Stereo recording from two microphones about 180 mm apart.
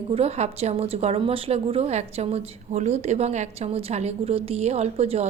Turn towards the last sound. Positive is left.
turn(degrees=-35)  # may be behind; listen again after turning